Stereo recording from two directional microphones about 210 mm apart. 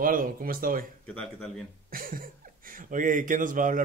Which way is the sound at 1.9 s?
40° right (ahead or behind).